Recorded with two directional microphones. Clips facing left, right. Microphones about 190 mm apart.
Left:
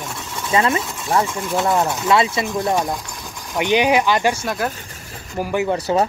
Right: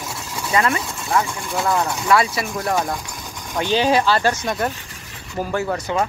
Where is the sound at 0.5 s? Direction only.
25° left (ahead or behind).